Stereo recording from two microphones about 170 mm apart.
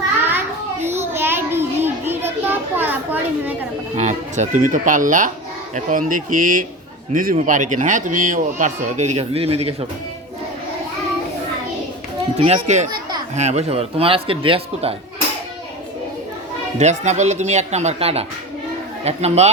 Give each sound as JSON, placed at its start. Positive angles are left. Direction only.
{"t": 0.3, "sound": "child singing", "side_deg": -10}
{"t": 3.9, "sound": "a man's voice", "side_deg": -40}
{"t": 12.4, "sound": "a man's voice", "side_deg": -40}
{"t": 16.7, "sound": "a man's voice", "side_deg": -45}